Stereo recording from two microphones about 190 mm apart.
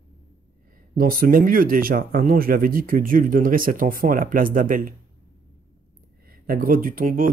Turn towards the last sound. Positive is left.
turn(degrees=-45)  # may be behind; listen again after turning